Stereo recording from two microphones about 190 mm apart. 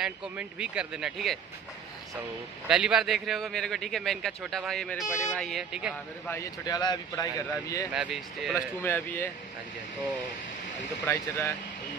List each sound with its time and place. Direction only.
0.0 s a man's voice: 5° right (ahead or behind)
2.7 s a man's voice: 5° right (ahead or behind)
5.0 s a man's voice: 15° left (ahead or behind); by 5.9 s 5° right (ahead or behind)
6.2 s speech: 15° left (ahead or behind)
7.9 s a man's voice: 5° right (ahead or behind)
11.1 s speech: 10° left (ahead or behind)